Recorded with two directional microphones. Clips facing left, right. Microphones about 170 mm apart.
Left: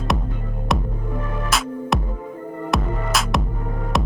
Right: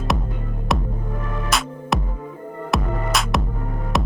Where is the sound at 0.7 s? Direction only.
Centre (ahead or behind).